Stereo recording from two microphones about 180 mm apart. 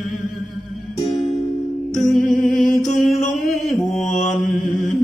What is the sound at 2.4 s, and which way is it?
Mantra, centre (ahead or behind).